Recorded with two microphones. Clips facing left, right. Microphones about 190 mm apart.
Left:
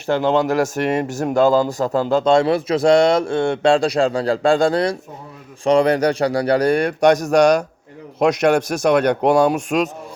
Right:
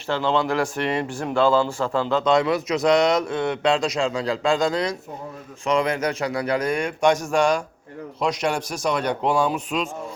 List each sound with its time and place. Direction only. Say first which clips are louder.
0.1 s speech: left 5 dB; 45° left (ahead or behind)
2.2 s speech: left 4 dB; 30° left (ahead or behind)
7.3 s speech: left 6 dB; 70° left (ahead or behind)